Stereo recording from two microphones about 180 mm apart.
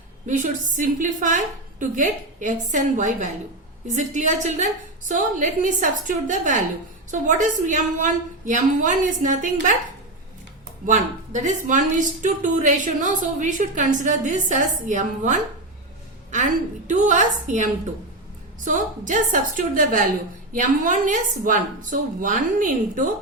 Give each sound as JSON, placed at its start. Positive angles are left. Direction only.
{"t": 0.3, "sound": "speech", "side_deg": -45}
{"t": 10.8, "sound": "speech", "side_deg": -45}